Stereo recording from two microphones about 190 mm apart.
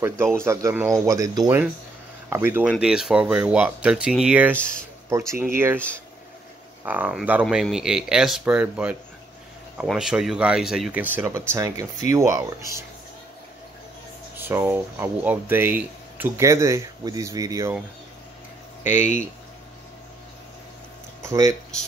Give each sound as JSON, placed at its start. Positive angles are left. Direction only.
{"t": 0.0, "sound": "speech", "side_deg": -15}
{"t": 4.6, "sound": "speech", "side_deg": 5}
{"t": 5.1, "sound": "speech", "side_deg": -15}
{"t": 6.8, "sound": "speech", "side_deg": -10}
{"t": 14.3, "sound": "speech", "side_deg": -10}
{"t": 18.9, "sound": "speech", "side_deg": 40}
{"t": 21.2, "sound": "speech", "side_deg": -15}